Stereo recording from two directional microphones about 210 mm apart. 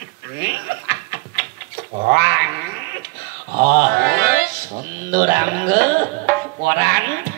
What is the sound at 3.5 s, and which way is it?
Mantra, 40° right (ahead or behind).